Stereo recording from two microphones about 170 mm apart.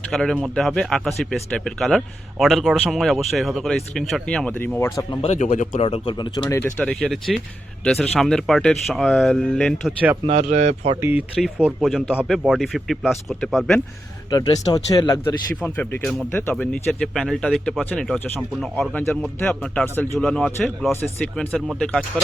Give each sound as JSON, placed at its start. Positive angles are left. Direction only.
{"t": 0.1, "sound": "speech", "side_deg": 5}
{"t": 5.2, "sound": "speech", "side_deg": 40}
{"t": 6.5, "sound": "speech", "side_deg": 10}
{"t": 10.2, "sound": "speech", "side_deg": -40}
{"t": 11.0, "sound": "speech", "side_deg": -10}
{"t": 14.3, "sound": "speech", "side_deg": 25}
{"t": 15.6, "sound": "speech", "side_deg": 10}